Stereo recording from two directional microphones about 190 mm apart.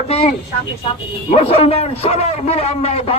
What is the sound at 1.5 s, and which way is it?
A man's voice, 30° left (ahead or behind).